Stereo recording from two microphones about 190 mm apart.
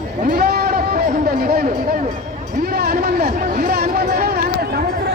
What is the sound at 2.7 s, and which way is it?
Speech, 55° right (ahead or behind).